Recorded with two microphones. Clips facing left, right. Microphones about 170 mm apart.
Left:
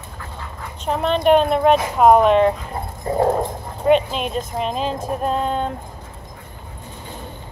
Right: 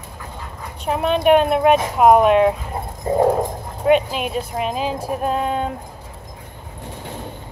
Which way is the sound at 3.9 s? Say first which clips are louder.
Even; 5° right (ahead or behind).